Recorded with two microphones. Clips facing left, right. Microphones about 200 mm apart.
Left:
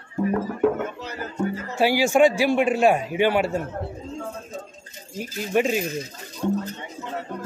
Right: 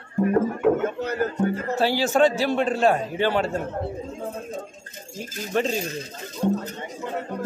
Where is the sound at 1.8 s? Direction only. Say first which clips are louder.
Left 3 dB; 10° left (ahead or behind).